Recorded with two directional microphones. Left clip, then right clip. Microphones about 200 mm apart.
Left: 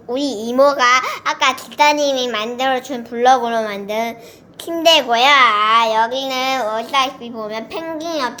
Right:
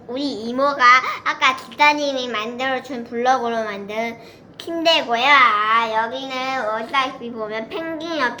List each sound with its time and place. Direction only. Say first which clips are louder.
0.1 s a child's voice: left 5 dB; 65° left (ahead or behind)